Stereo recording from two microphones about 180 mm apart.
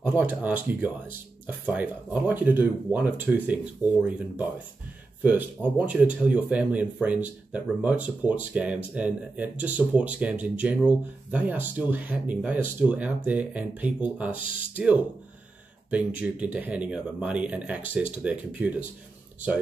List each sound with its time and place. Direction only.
0.0 s speech: 10° right (ahead or behind)
14.4 s speech: 45° right (ahead or behind)
16.2 s speech: 10° right (ahead or behind)